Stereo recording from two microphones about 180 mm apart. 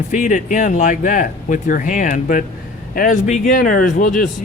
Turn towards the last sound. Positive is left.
turn(degrees=50)  # may be behind; listen again after turning